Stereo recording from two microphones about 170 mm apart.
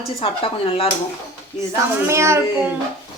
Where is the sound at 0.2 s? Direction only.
30° left (ahead or behind).